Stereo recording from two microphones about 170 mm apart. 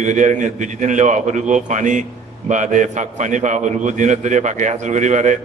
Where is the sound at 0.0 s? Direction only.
45° right (ahead or behind).